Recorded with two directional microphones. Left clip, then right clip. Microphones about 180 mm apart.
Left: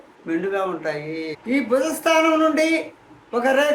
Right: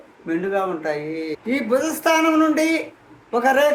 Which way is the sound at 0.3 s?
10° right (ahead or behind).